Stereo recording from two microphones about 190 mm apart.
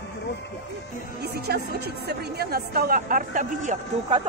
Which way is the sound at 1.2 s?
55° right (ahead or behind).